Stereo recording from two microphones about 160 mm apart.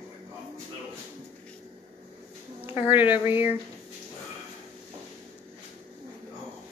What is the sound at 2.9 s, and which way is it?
Speech, 10° right (ahead or behind).